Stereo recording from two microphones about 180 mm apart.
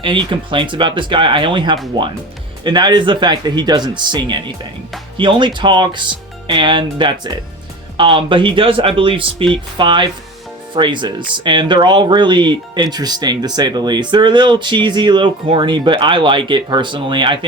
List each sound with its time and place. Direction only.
0.0 s speech: 25° right (ahead or behind)